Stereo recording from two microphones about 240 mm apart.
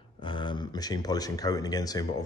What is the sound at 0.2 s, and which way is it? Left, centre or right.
Speech, centre.